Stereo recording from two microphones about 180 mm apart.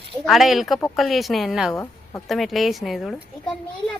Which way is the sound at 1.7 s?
15° left (ahead or behind).